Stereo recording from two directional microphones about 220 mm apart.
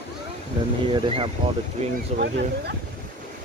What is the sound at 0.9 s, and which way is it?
Speech, 25° right (ahead or behind).